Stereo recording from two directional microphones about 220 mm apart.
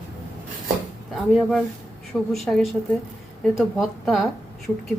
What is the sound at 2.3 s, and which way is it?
Speech, centre (ahead or behind).